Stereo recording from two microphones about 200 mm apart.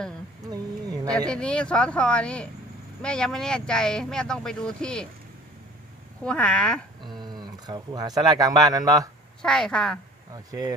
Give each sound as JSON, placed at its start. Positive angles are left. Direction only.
{"t": 0.4, "sound": "a sound", "side_deg": -20}
{"t": 1.3, "sound": "speech", "side_deg": 5}
{"t": 6.2, "sound": "speech", "side_deg": 5}
{"t": 7.3, "sound": "speech", "side_deg": -20}
{"t": 9.4, "sound": "speech", "side_deg": 5}
{"t": 10.3, "sound": "speech", "side_deg": -20}